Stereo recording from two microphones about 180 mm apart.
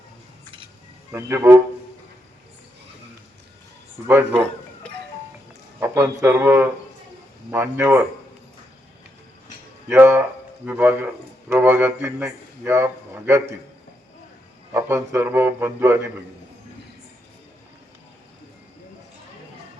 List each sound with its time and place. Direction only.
1.1 s a man's voice: 15° right (ahead or behind)
4.0 s a man's voice: 15° right (ahead or behind)
5.8 s a man's voice: 15° right (ahead or behind)
9.9 s a man's voice: 15° right (ahead or behind)
14.7 s a man's voice: 15° right (ahead or behind)